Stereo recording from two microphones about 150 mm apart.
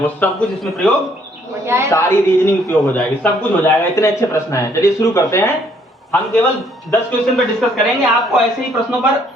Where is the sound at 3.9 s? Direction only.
20° left (ahead or behind).